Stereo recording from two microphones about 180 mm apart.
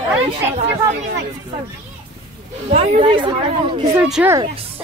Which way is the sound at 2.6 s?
35° right (ahead or behind).